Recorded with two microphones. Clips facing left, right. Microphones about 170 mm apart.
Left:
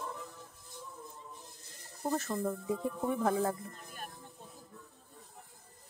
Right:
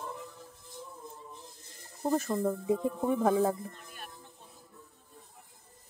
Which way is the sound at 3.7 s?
40° left (ahead or behind).